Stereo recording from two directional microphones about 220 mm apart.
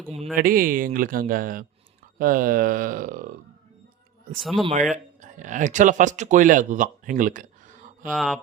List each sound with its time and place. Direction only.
0.3 s speech: 40° right (ahead or behind)
4.4 s speech: centre (ahead or behind)
4.6 s speech: 30° right (ahead or behind)
8.1 s speech: centre (ahead or behind)